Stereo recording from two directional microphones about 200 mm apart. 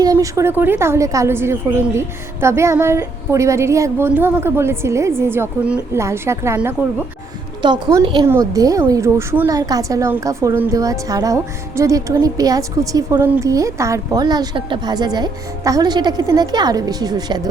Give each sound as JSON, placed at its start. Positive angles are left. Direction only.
{"t": 0.0, "sound": "a woman's voice", "side_deg": -15}